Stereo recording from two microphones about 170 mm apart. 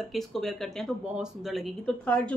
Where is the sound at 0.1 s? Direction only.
Centre (ahead or behind).